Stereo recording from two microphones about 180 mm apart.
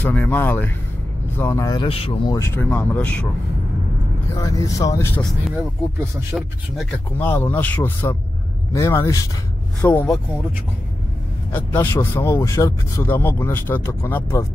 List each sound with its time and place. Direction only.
0.0 s speech: 10° left (ahead or behind); by 2.3 s 30° left (ahead or behind)
2.3 s speech: 15° left (ahead or behind)
4.3 s speech: 20° left (ahead or behind)
6.3 s speech: 5° right (ahead or behind)
7.1 s speech: 10° left (ahead or behind)
11.5 s speech: 10° left (ahead or behind)